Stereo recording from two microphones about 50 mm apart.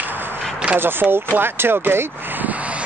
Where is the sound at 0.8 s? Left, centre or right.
Right.